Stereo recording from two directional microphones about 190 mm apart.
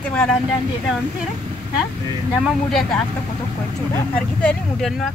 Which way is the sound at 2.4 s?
Centre (ahead or behind).